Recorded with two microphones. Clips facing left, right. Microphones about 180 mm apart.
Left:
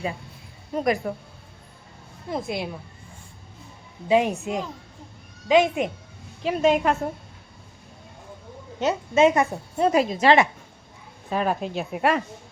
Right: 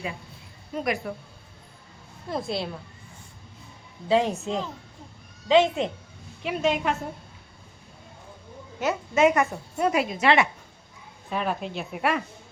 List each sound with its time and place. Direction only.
0.7 s a woman's voice: 40° left (ahead or behind)
2.3 s a woman's voice: 15° left (ahead or behind)
4.1 s a woman's voice: 15° left (ahead or behind)
6.4 s a woman's voice: 45° left (ahead or behind)
8.8 s a woman's voice: 25° left (ahead or behind)